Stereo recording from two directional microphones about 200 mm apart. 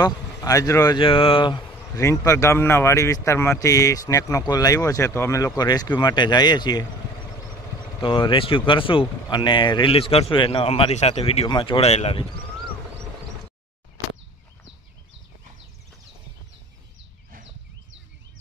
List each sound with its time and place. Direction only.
0.0 s speech: 20° left (ahead or behind)
8.0 s speech: 25° left (ahead or behind)